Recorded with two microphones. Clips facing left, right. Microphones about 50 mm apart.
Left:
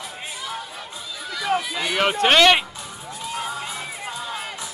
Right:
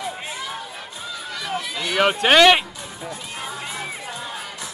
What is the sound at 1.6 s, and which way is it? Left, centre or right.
Run, centre.